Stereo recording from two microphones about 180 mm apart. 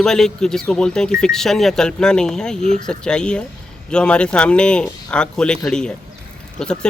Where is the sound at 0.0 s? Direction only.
5° left (ahead or behind).